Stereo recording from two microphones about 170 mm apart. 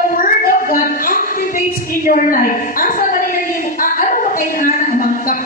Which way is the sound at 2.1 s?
55° left (ahead or behind).